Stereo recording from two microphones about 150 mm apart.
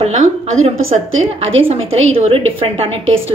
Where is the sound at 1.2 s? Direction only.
40° right (ahead or behind).